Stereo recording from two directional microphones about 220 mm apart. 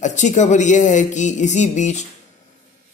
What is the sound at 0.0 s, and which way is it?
A man's voice, 35° left (ahead or behind).